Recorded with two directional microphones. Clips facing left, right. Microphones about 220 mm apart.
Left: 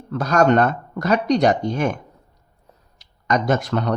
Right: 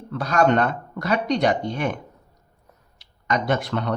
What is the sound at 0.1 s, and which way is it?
Speech, 45° left (ahead or behind).